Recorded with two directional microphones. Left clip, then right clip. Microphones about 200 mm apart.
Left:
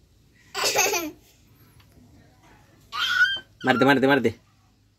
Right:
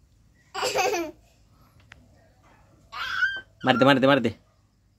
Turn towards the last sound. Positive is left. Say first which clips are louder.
# even
turn(degrees=-15)  # may be behind; listen again after turning